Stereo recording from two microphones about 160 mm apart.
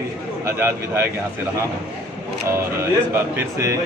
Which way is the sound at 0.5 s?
15° right (ahead or behind).